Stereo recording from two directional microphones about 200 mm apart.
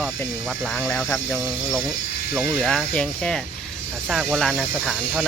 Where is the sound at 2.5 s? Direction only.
5° left (ahead or behind).